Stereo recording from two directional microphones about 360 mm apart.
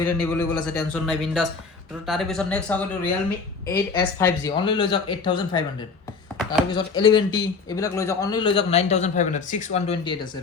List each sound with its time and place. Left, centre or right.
0.0 s speech: centre
6.7 s speech: centre